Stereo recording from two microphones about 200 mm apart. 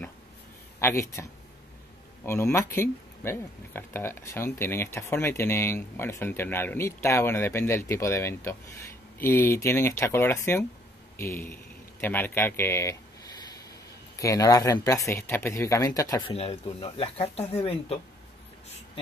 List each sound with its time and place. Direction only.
0.7 s a man's voice: 15° left (ahead or behind)
2.2 s a man's voice: 15° left (ahead or behind)
14.1 s speech: 15° left (ahead or behind)
16.3 s speech: 30° left (ahead or behind)